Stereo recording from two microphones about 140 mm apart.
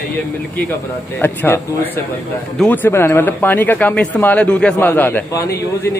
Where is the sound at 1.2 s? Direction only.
15° left (ahead or behind).